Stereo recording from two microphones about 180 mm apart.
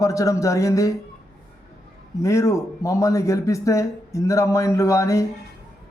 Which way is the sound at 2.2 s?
15° left (ahead or behind).